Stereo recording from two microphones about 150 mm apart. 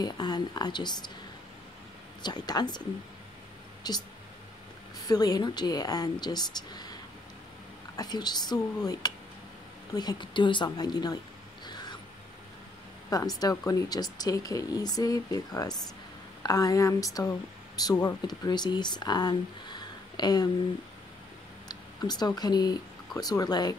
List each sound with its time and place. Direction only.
0.0 s speech: 25° left (ahead or behind)
2.2 s speech: 25° left (ahead or behind)
3.8 s speech: 25° left (ahead or behind)
5.0 s speech: 25° left (ahead or behind)
11.6 s a sound: 30° left (ahead or behind)
13.1 s speech: 25° left (ahead or behind)
21.6 s speech: 25° left (ahead or behind)